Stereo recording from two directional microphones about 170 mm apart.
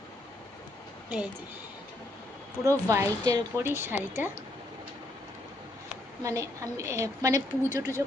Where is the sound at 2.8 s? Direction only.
20° right (ahead or behind).